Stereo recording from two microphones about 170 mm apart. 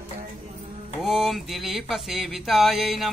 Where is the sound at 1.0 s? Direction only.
Centre (ahead or behind).